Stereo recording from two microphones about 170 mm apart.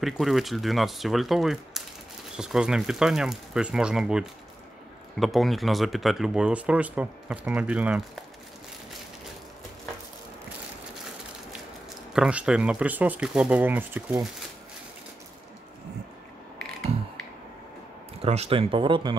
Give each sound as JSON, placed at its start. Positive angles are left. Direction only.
{"t": 0.0, "sound": "speech", "side_deg": 0}
{"t": 12.1, "sound": "speech", "side_deg": -5}
{"t": 18.2, "sound": "speech", "side_deg": -35}